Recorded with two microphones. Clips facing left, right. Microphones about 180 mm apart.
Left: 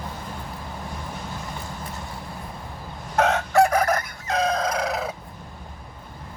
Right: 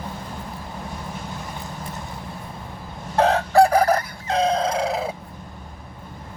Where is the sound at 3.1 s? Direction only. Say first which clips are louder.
Right 3 dB; 35° right (ahead or behind).